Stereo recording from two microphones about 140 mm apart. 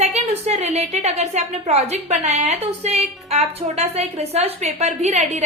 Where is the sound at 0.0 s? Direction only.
50° right (ahead or behind).